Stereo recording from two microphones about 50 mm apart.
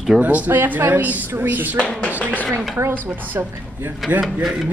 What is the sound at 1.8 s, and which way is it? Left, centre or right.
Speech, left.